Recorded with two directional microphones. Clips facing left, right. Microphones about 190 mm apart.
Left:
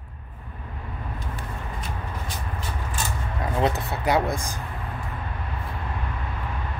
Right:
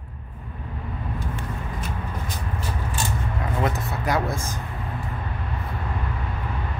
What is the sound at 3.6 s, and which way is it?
Speech, 30° left (ahead or behind).